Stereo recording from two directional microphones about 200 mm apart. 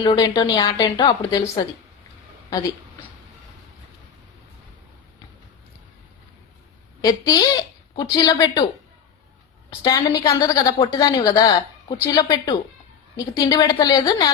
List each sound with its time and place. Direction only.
0.0 s a woman's voice: 20° left (ahead or behind)
2.5 s a woman's voice: 20° left (ahead or behind)
7.0 s a woman's voice: 20° left (ahead or behind)
9.6 s a woman's voice: 20° left (ahead or behind)